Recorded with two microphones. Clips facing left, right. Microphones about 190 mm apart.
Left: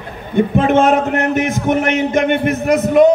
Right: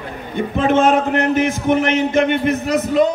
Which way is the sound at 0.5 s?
55° left (ahead or behind).